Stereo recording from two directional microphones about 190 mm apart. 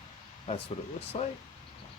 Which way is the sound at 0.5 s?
35° left (ahead or behind).